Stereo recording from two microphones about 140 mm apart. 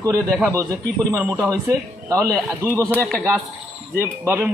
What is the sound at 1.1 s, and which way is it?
A man's voice, 20° right (ahead or behind).